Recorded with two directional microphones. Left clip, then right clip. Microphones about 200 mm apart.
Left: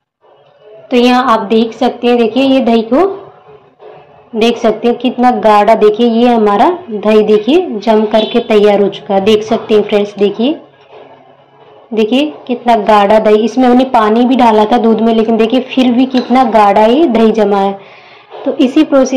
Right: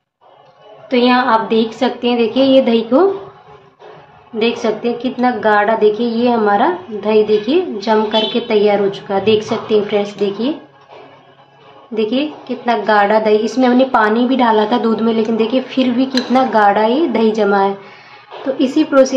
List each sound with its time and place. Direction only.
0.8 s a woman's voice: 15° left (ahead or behind)
4.4 s a woman's voice: 20° left (ahead or behind)
11.9 s a woman's voice: 20° left (ahead or behind)